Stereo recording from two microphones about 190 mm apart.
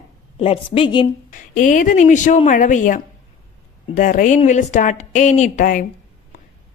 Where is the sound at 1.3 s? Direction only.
45° left (ahead or behind).